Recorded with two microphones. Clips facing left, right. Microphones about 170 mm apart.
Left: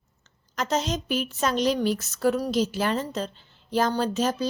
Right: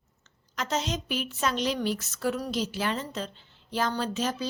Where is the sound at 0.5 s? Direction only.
40° left (ahead or behind).